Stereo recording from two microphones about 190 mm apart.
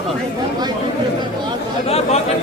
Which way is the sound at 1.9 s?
30° left (ahead or behind).